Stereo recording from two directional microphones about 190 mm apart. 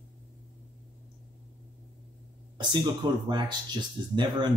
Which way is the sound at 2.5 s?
25° right (ahead or behind).